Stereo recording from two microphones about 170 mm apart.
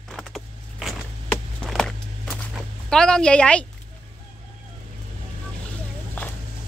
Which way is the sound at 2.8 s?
5° left (ahead or behind).